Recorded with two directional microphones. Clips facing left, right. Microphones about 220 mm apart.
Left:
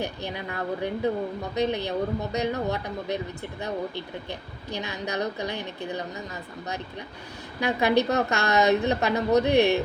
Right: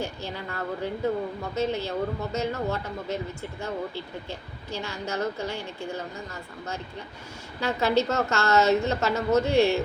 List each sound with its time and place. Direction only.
0.0 s speech: 15° left (ahead or behind)
7.6 s speech: 15° left (ahead or behind)